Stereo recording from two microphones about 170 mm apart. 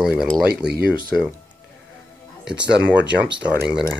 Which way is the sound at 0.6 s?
70° right (ahead or behind).